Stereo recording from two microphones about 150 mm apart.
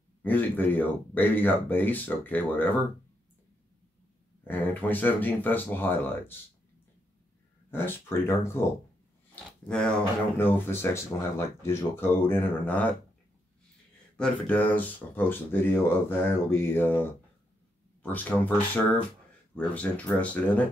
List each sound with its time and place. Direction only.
0.2 s speech: 10° left (ahead or behind)
4.5 s speech: 10° left (ahead or behind)
7.7 s speech: 15° left (ahead or behind)
9.3 s speech: 5° left (ahead or behind)
14.1 s speech: 10° left (ahead or behind)